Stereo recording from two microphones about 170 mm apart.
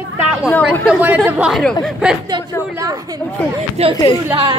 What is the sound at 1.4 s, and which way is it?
Speech, centre (ahead or behind).